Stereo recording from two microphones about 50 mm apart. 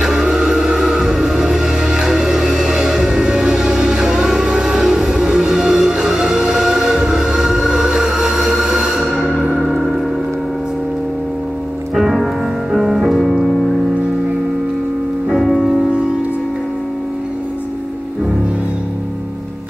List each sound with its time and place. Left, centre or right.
0.0 s music: centre
11.9 s music: centre
15.2 s music: centre